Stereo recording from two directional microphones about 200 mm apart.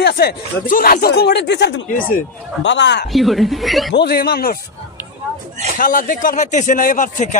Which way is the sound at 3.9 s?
50° left (ahead or behind).